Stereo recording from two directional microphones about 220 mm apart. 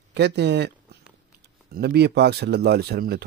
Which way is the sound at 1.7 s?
45° right (ahead or behind).